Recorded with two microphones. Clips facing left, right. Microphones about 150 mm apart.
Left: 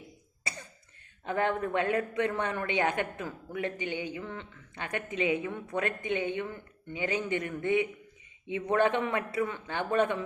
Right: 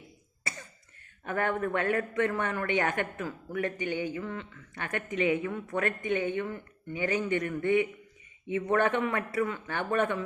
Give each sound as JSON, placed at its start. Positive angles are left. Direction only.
{"t": 1.2, "sound": "a man's voice", "side_deg": 20}